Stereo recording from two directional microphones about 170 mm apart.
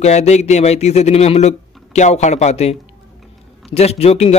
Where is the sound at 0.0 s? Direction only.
40° left (ahead or behind).